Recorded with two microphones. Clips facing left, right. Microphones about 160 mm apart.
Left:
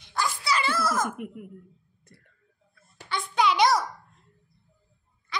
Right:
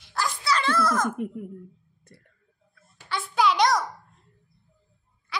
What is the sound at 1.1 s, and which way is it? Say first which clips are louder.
Speech: right 6 dB; 30° right (ahead or behind).